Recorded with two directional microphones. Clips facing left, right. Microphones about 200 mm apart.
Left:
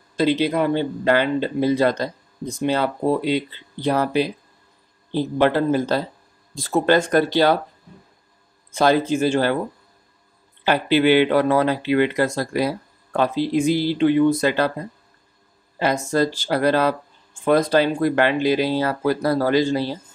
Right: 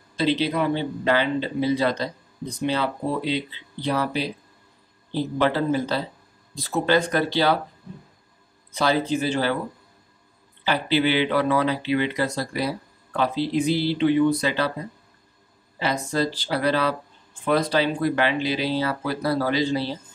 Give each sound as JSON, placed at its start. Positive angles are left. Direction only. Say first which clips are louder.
{"t": 0.1, "sound": "speech", "louder": "left 4 dB", "side_deg": 45}
{"t": 5.4, "sound": "speech", "louder": "left 4 dB", "side_deg": 50}
{"t": 8.7, "sound": "speech", "louder": "left 4 dB", "side_deg": 50}
{"t": 10.6, "sound": "speech", "louder": "left 4 dB", "side_deg": 50}
{"t": 15.8, "sound": "speech", "louder": "left 4 dB", "side_deg": 45}